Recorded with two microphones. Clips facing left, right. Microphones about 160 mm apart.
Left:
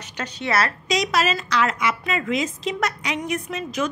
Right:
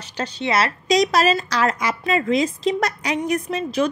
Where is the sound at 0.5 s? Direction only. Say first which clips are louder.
Right 1 dB; 20° right (ahead or behind).